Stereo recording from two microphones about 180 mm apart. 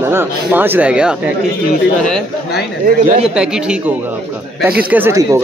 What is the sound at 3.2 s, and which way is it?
Speech, 5° right (ahead or behind).